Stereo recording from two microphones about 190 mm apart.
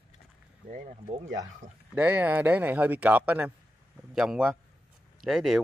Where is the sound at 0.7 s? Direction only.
40° right (ahead or behind).